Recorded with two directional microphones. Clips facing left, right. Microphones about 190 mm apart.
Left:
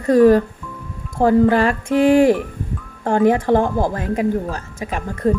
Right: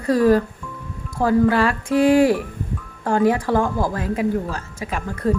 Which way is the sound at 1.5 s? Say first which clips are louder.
Left 3 dB; 45° left (ahead or behind).